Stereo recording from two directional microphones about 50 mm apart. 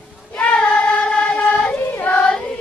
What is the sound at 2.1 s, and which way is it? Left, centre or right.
Music, left.